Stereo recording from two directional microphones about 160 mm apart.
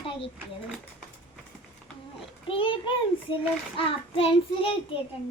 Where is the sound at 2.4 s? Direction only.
35° left (ahead or behind).